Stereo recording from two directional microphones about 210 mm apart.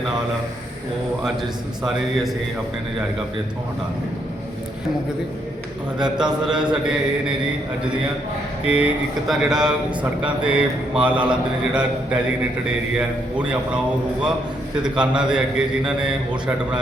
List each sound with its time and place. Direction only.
1.2 s speech: centre (ahead or behind)
6.1 s speech: 5° right (ahead or behind)
8.6 s speech: 5° right (ahead or behind)
14.8 s speech: 5° right (ahead or behind)